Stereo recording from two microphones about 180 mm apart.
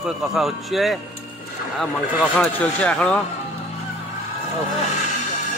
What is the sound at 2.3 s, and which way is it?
Speech, 5° left (ahead or behind).